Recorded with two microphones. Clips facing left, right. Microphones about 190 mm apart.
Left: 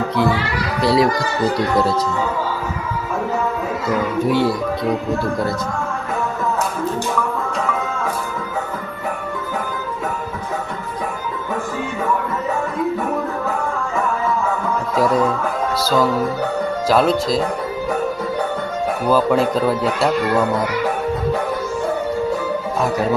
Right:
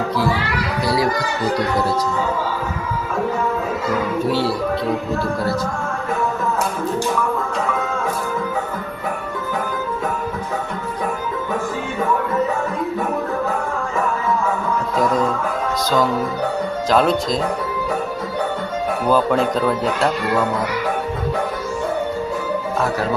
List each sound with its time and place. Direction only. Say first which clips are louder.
0.8 s speech: left 5 dB; 25° left (ahead or behind)
4.3 s speech: left 4 dB; 15° left (ahead or behind)
15.8 s music: left 1 dB; 5° left (ahead or behind)
16.9 s a man's voice: left 1 dB; 5° left (ahead or behind)
19.1 s a man's voice: left 2 dB; 5° left (ahead or behind)